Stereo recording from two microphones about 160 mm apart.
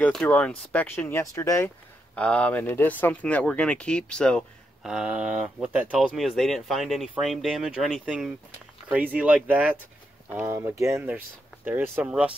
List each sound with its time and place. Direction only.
0.0 s speech: 5° left (ahead or behind)
2.1 s speech: 10° left (ahead or behind); by 12.3 s 10° right (ahead or behind)